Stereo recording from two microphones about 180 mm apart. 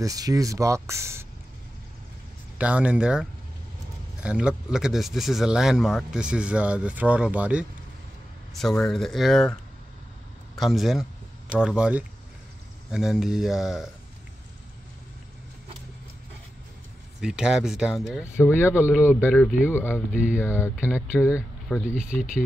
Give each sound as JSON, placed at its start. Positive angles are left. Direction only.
{"t": 0.0, "sound": "speech", "side_deg": -20}
{"t": 2.6, "sound": "speech", "side_deg": -5}
{"t": 8.5, "sound": "a man's voice", "side_deg": 5}
{"t": 17.2, "sound": "speech", "side_deg": -5}
{"t": 18.2, "sound": "speech", "side_deg": 15}
{"t": 20.2, "sound": "speech", "side_deg": -10}
{"t": 20.4, "sound": "speech", "side_deg": 15}
{"t": 20.8, "sound": "speech", "side_deg": -10}
{"t": 21.2, "sound": "speech", "side_deg": 15}
{"t": 21.8, "sound": "speech", "side_deg": -5}